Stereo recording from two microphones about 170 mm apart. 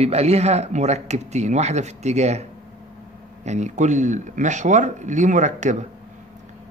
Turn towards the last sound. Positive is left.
turn(degrees=-45)  # may be behind; listen again after turning